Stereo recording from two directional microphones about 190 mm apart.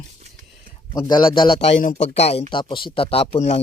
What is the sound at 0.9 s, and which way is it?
Speech, 20° left (ahead or behind).